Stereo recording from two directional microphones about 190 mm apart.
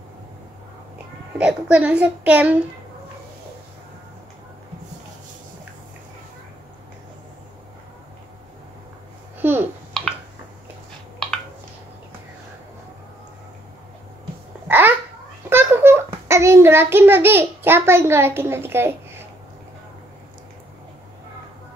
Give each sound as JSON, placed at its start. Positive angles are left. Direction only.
{"t": 1.4, "sound": "a child's voice", "side_deg": -5}
{"t": 9.4, "sound": "babbling", "side_deg": -10}
{"t": 14.7, "sound": "babbling", "side_deg": -10}
{"t": 15.5, "sound": "a sound", "side_deg": -10}